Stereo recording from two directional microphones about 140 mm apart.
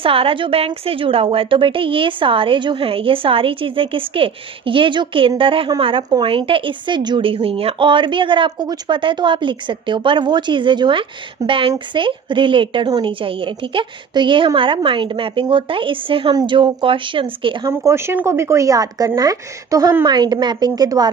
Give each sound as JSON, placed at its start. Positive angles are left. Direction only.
{"t": 0.0, "sound": "a woman's voice", "side_deg": -40}
{"t": 17.6, "sound": "a woman's voice", "side_deg": -20}
{"t": 20.1, "sound": "a woman's voice", "side_deg": -30}